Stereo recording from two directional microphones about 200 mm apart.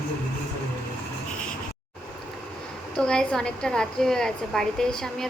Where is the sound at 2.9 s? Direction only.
5° left (ahead or behind).